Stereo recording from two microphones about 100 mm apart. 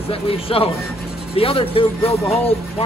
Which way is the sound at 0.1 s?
70° left (ahead or behind).